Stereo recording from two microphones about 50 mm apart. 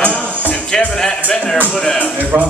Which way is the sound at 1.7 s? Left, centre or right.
Centre.